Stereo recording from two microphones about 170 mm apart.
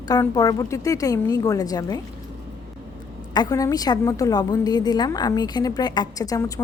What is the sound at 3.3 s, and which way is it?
A woman's voice, 20° left (ahead or behind).